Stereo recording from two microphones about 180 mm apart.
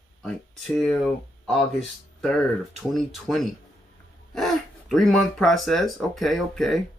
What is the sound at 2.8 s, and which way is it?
Speech, centre (ahead or behind).